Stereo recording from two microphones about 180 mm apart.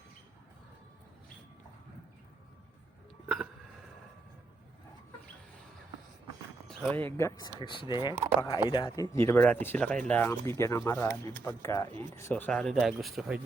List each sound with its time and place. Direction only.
3.2 s hiccup: centre (ahead or behind)
6.7 s speech: 5° left (ahead or behind); by 9.0 s 25° left (ahead or behind)
9.1 s speech: 10° left (ahead or behind)